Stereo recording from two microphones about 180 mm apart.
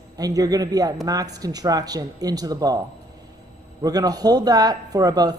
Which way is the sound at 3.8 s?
20° right (ahead or behind).